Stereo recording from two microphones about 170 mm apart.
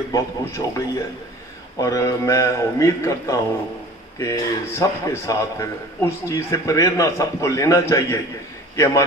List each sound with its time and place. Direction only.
0.1 s a man's voice: 20° left (ahead or behind)